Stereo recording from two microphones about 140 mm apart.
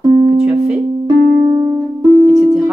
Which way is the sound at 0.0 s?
35° right (ahead or behind).